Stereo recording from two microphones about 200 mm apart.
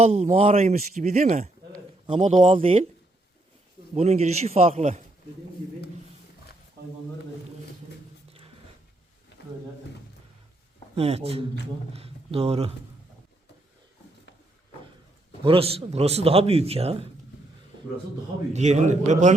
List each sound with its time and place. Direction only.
0.0 s speech: 35° right (ahead or behind)
2.3 s a man's voice: 25° right (ahead or behind)
3.9 s speech: 35° right (ahead or behind)
6.8 s a sound: 50° right (ahead or behind)
8.3 s a sound: 30° right (ahead or behind)
10.9 s a man's voice: 30° right (ahead or behind)
15.4 s a man's voice: 30° right (ahead or behind)
18.5 s speech: 35° right (ahead or behind)